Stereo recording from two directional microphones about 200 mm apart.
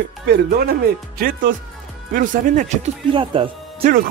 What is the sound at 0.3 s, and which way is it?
A man's voice, 50° right (ahead or behind).